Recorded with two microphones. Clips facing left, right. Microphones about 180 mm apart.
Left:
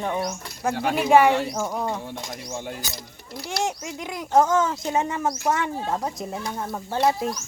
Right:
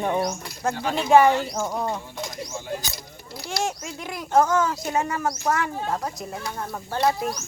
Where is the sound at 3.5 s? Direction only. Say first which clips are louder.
Left 1 dB; 15° left (ahead or behind).